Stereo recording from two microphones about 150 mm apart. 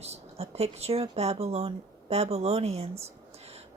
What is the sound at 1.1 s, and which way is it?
Speech, 45° right (ahead or behind).